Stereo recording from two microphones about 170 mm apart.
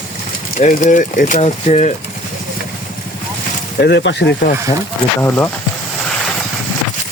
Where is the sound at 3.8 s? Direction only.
85° left.